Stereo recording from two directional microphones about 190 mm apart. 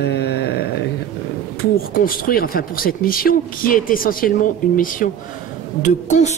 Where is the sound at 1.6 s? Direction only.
50° left (ahead or behind).